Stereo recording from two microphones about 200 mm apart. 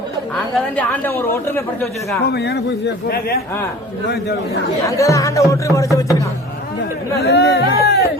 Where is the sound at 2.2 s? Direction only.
55° left (ahead or behind).